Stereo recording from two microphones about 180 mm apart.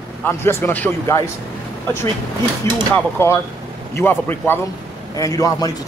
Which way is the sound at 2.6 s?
15° left (ahead or behind).